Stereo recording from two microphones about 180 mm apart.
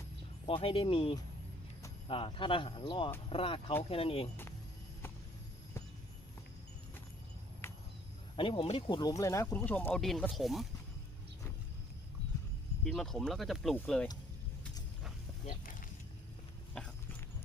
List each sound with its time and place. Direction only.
0.4 s speech: 30° left (ahead or behind)
7.6 s a sound: 15° left (ahead or behind)
8.4 s speech: 30° left (ahead or behind)
9.0 s speech: 20° left (ahead or behind); by 10.7 s centre (ahead or behind)
12.8 s speech: centre (ahead or behind)